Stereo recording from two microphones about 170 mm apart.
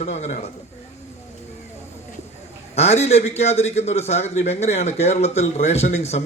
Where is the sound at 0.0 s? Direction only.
40° left (ahead or behind).